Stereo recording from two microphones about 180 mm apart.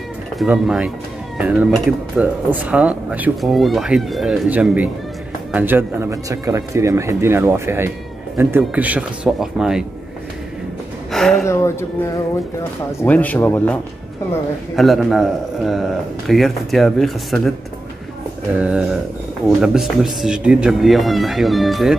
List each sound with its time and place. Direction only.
0.4 s a man's voice: 5° right (ahead or behind)
11.1 s speech: centre (ahead or behind)
11.4 s speech: 15° left (ahead or behind)
14.8 s a man's voice: centre (ahead or behind)
18.6 s a man's voice: 5° right (ahead or behind)